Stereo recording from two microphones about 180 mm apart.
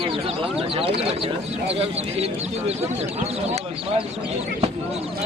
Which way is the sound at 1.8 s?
35° right (ahead or behind).